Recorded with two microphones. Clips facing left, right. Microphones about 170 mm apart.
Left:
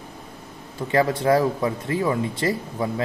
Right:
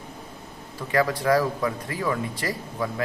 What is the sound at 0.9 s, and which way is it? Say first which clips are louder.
Speech: left 2 dB; 25° left (ahead or behind).